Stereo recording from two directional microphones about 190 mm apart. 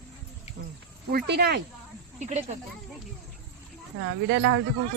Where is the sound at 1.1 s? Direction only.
55° right (ahead or behind).